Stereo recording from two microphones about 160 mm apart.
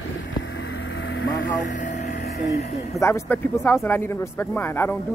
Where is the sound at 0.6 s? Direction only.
90° left.